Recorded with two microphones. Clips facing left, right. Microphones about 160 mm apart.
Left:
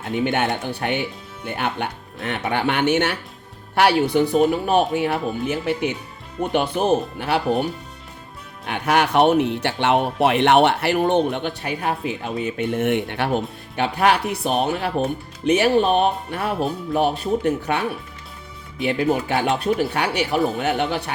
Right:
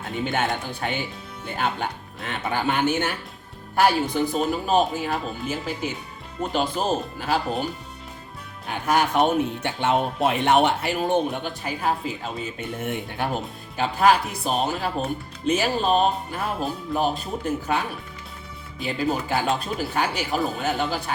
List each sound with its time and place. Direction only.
0.3 s speech: 65° left (ahead or behind)
8.6 s speech: 70° left (ahead or behind)